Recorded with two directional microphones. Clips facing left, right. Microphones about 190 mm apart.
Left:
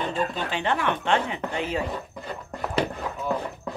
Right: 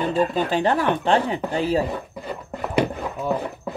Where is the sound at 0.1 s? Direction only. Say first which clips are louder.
Right 7 dB; 40° right (ahead or behind).